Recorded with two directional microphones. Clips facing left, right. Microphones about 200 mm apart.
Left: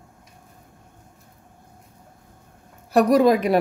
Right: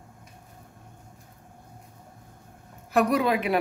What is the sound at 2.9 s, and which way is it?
Speech, 40° left (ahead or behind).